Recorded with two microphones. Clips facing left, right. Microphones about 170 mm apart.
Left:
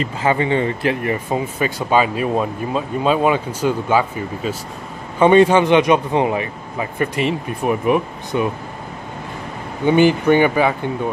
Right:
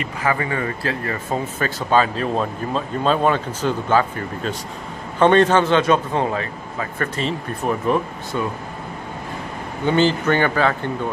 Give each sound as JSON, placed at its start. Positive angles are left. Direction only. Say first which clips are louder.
{"t": 0.0, "sound": "speech", "louder": "left 4 dB", "side_deg": 25}
{"t": 9.8, "sound": "speech", "louder": "left 4 dB", "side_deg": 15}